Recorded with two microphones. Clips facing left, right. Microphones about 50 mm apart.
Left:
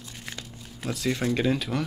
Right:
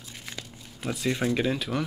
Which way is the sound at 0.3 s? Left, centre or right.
Centre.